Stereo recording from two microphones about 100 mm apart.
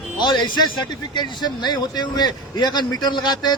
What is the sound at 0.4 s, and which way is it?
Speech, 50° left (ahead or behind).